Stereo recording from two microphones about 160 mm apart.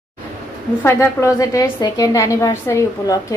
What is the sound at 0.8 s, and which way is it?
A woman's voice, 20° left (ahead or behind).